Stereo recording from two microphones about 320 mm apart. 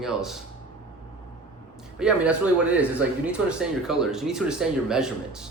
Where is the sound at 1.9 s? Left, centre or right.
Centre.